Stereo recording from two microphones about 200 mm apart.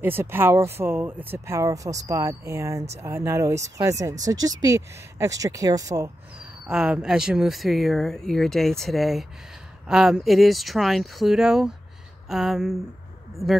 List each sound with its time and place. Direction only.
0.0 s speech: 10° right (ahead or behind)
6.7 s speech: 5° right (ahead or behind)